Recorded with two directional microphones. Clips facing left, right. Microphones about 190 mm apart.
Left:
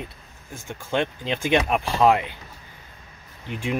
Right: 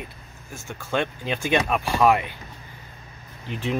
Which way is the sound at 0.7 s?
20° left (ahead or behind).